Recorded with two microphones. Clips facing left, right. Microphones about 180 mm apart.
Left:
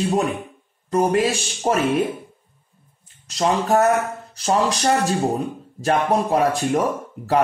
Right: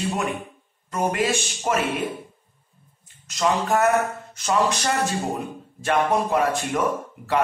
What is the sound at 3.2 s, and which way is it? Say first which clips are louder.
A man's voice: left 2 dB; 35° left (ahead or behind).